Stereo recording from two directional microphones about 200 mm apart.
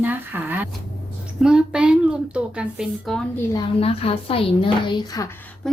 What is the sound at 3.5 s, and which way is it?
Speech, 25° left (ahead or behind).